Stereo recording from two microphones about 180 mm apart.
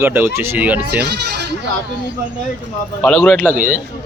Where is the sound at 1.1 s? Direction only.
65° right (ahead or behind).